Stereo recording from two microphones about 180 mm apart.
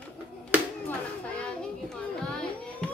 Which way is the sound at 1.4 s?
5° left (ahead or behind).